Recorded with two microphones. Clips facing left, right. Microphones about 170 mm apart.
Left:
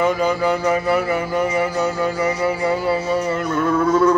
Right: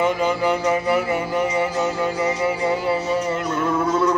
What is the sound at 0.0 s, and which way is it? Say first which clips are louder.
Music: left 2 dB; 20° right (ahead or behind).